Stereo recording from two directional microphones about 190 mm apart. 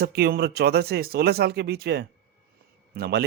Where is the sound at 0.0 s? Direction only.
55° right (ahead or behind).